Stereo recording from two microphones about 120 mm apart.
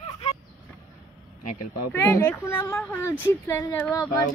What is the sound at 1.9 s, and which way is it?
Speech, 20° left (ahead or behind).